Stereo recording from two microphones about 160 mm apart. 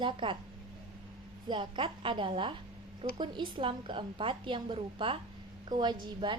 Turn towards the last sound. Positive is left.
turn(degrees=-30)  # may be behind; listen again after turning